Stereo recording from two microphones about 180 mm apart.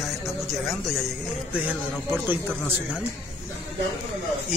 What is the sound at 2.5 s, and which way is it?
Speech, 10° left (ahead or behind).